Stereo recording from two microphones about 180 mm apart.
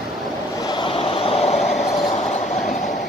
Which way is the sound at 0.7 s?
30° left (ahead or behind).